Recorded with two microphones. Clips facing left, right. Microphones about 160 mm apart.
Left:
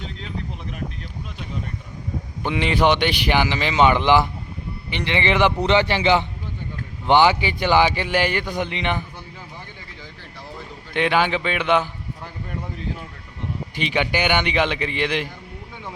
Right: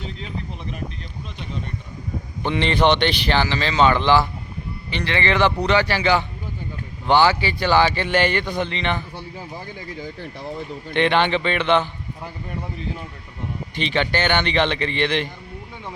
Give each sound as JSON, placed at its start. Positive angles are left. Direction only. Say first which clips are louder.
{"t": 2.4, "sound": "a man's voice", "louder": "right 1 dB", "side_deg": 5}
{"t": 9.1, "sound": "a sound", "louder": "right 5 dB", "side_deg": -35}
{"t": 10.9, "sound": "a man's voice", "louder": "right 1 dB", "side_deg": 5}
{"t": 13.7, "sound": "a man's voice", "louder": "right 1 dB", "side_deg": 10}